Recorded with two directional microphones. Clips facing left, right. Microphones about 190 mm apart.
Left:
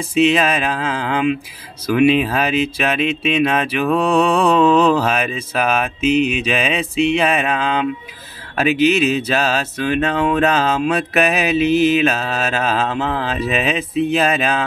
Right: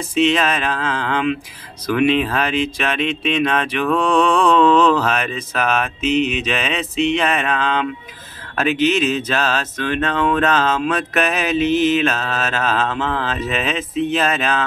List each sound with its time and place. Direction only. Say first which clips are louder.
0.1 s speech: left 2 dB; 10° left (ahead or behind)